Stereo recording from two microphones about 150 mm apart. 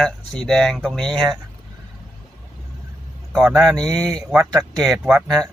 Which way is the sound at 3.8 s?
25° right (ahead or behind).